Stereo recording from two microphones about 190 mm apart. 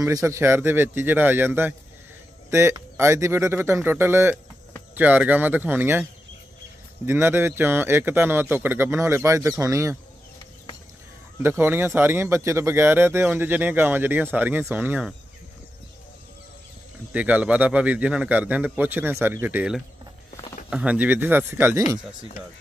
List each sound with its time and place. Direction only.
0.0 s speech: 15° right (ahead or behind)
7.1 s speech: 10° right (ahead or behind)
11.4 s speech: 10° right (ahead or behind)
17.1 s speech: 5° right (ahead or behind)